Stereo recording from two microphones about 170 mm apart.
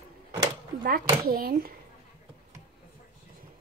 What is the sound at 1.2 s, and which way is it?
Speech, 60° right (ahead or behind).